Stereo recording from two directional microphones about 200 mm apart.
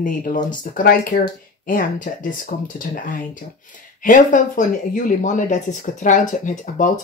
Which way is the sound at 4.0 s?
40° left (ahead or behind).